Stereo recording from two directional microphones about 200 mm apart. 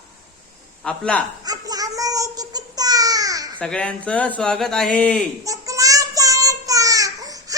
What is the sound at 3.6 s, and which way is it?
Speech, 5° left (ahead or behind).